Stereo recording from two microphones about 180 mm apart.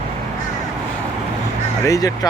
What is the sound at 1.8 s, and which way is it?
Speech, 20° left (ahead or behind).